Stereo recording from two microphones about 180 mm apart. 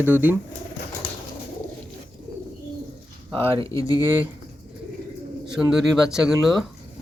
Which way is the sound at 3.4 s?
30° right (ahead or behind).